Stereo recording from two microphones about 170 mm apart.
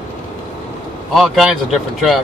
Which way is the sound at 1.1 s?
Centre (ahead or behind).